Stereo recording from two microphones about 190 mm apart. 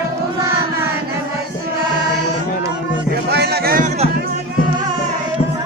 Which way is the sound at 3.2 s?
60° right (ahead or behind).